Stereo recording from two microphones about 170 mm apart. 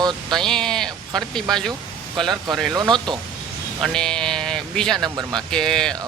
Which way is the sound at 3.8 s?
5° left (ahead or behind).